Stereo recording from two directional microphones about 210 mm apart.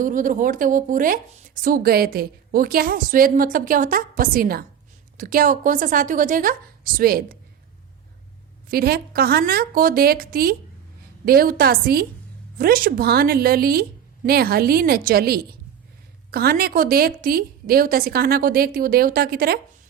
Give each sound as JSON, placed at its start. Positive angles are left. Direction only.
{"t": 0.0, "sound": "a woman's voice", "side_deg": -40}
{"t": 8.7, "sound": "a woman's voice", "side_deg": -45}